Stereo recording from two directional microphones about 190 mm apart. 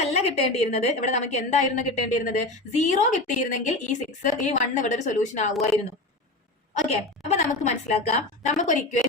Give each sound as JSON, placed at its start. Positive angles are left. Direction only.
{"t": 0.1, "sound": "a woman's voice", "side_deg": 35}
{"t": 6.7, "sound": "a woman's voice", "side_deg": 35}